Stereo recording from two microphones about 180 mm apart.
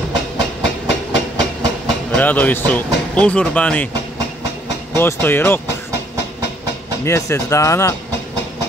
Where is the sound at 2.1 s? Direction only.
10° left (ahead or behind).